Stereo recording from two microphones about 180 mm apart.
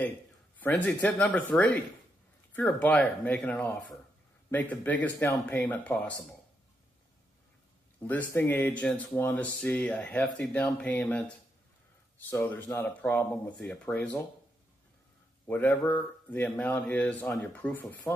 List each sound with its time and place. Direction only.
0.6 s speech: 10° left (ahead or behind)
8.1 s speech: 10° left (ahead or behind)
12.3 s speech: 10° left (ahead or behind)
15.4 s speech: 10° left (ahead or behind)